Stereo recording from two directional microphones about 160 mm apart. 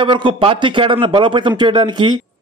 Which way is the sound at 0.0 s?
30° right (ahead or behind).